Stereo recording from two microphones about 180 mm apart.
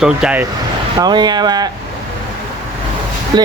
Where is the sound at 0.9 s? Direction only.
25° right (ahead or behind).